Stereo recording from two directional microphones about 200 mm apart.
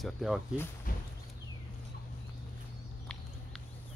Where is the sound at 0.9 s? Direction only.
45° left (ahead or behind).